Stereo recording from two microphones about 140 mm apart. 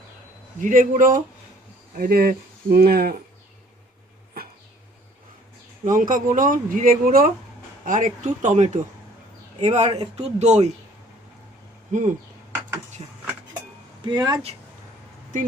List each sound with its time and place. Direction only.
0.6 s speech: 70° right (ahead or behind)
2.0 s speech: 90° right
5.8 s speech: 70° right (ahead or behind); by 7.3 s 90° right
7.9 s speech: 65° right (ahead or behind)
11.9 s speech: 60° right (ahead or behind)
14.0 s speech: 30° right (ahead or behind)